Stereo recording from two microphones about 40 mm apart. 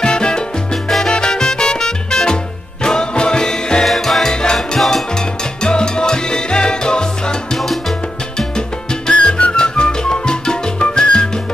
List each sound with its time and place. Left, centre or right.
0.0 s salsa music: left
1.0 s music: centre
3.8 s music: centre
4.3 s music: centre
4.6 s music: centre
5.1 s salsa music: centre
7.5 s salsa music: centre
8.4 s music: centre